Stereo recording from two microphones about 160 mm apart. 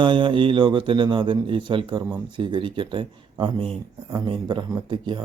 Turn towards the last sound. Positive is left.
turn(degrees=-30)  # may be behind; listen again after turning